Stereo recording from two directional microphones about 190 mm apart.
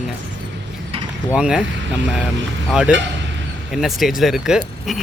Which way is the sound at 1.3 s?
5° right (ahead or behind).